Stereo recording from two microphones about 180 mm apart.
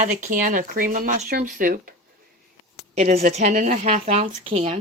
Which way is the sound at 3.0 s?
40° right (ahead or behind).